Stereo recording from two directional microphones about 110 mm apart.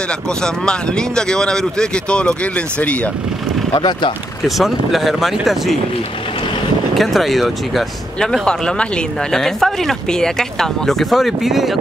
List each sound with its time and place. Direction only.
0.4 s speech: 5° left (ahead or behind)
3.7 s speech: 40° left (ahead or behind)
4.5 s speech: centre (ahead or behind)
7.0 s speech: centre (ahead or behind)